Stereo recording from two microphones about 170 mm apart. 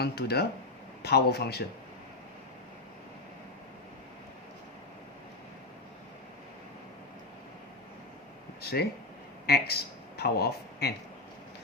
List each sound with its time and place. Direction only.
0.0 s speech: 70° left (ahead or behind)
8.6 s speech: 70° left (ahead or behind)